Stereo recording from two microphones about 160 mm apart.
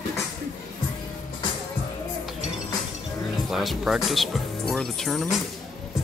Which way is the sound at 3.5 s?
Centre (ahead or behind).